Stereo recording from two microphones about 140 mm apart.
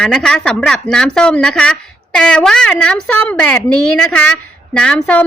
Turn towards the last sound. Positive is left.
turn(degrees=10)  # may be behind; listen again after turning